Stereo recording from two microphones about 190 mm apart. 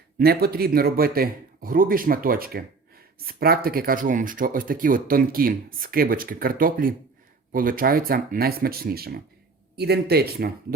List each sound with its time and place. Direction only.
0.2 s speech: 55° right (ahead or behind)